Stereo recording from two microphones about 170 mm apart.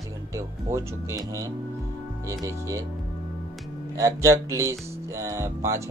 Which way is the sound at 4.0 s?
15° right (ahead or behind).